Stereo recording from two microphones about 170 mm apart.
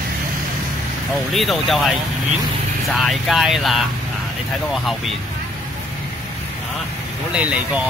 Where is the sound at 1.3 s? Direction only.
Centre (ahead or behind).